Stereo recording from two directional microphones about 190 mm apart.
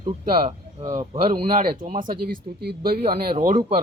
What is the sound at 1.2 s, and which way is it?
Speech, 25° right (ahead or behind).